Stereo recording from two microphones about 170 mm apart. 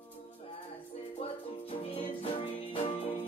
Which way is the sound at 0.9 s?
35° left (ahead or behind).